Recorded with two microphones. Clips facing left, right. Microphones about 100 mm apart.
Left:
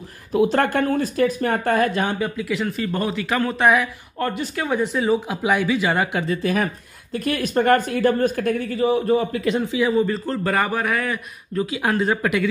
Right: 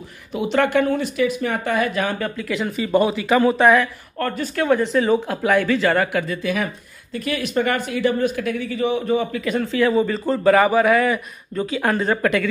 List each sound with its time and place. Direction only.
0.9 s speech: 45° left (ahead or behind)
1.9 s speech: 30° left (ahead or behind)
2.1 s speech: 10° left (ahead or behind)
2.6 s a man's voice: 5° right (ahead or behind)
3.6 s speech: 10° left (ahead or behind)
6.2 s speech: 35° left (ahead or behind)
8.7 s a man's voice: 35° left (ahead or behind)
9.6 s speech: 10° left (ahead or behind)
9.9 s a man's voice: centre (ahead or behind)